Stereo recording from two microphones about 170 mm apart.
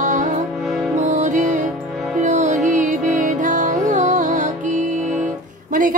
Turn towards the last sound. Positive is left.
turn(degrees=-50)  # may be behind; listen again after turning